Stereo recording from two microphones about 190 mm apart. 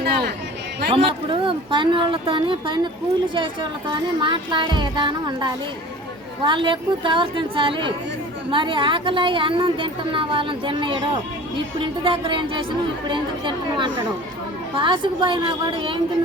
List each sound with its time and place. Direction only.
0.0 s chatter: 60° right (ahead or behind)
0.9 s a woman's voice: 30° right (ahead or behind)